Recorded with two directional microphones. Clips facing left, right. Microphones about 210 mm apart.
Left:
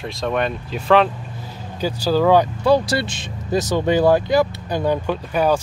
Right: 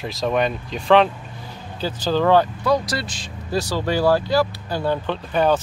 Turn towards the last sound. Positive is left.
turn(degrees=10)  # may be behind; listen again after turning